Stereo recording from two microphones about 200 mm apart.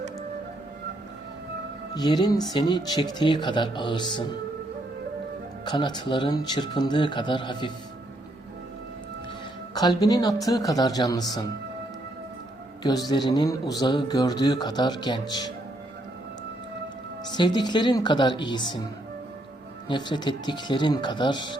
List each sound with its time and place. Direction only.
2.0 s speech: 20° left (ahead or behind)
5.6 s speech: 20° left (ahead or behind)
9.7 s speech: 20° left (ahead or behind)
12.8 s speech: 20° left (ahead or behind)
17.2 s speech: 20° left (ahead or behind)
19.9 s speech: 20° left (ahead or behind)